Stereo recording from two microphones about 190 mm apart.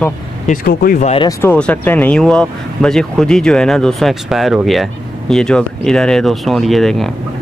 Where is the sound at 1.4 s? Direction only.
10° left (ahead or behind).